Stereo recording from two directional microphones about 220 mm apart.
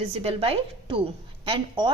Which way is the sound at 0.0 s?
25° right (ahead or behind).